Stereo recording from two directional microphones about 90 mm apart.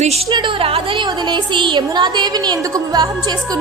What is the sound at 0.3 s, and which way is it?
Speech, 75° right (ahead or behind).